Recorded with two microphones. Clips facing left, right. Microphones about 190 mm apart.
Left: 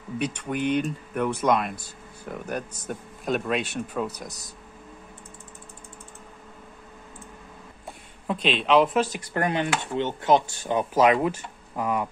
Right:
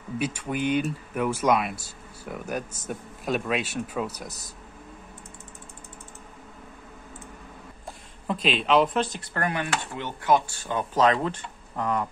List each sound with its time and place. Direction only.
0.2 s speech: 5° right (ahead or behind)
8.3 s speech: centre (ahead or behind)
9.3 s speech: 20° left (ahead or behind)